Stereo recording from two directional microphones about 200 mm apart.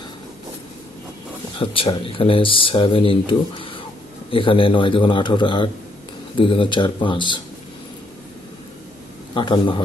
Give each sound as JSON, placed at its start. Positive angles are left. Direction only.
{"t": 1.5, "sound": "speech", "side_deg": 25}
{"t": 9.3, "sound": "speech", "side_deg": 25}